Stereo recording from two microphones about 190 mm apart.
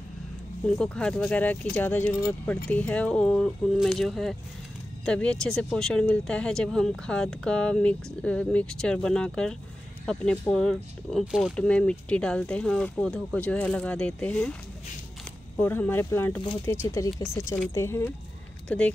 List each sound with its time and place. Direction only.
0.7 s speech: 5° left (ahead or behind)
15.5 s speech: 10° left (ahead or behind)